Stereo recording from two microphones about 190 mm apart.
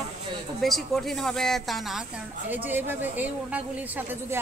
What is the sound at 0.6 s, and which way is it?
A woman's voice, centre (ahead or behind).